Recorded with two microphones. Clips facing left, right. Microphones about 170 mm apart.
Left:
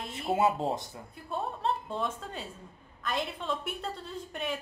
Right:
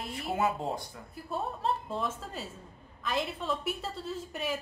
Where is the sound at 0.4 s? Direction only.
25° left (ahead or behind).